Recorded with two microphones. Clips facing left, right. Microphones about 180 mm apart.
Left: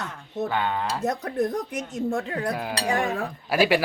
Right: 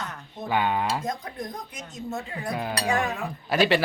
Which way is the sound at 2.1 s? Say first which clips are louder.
Left 6 dB; 90° left.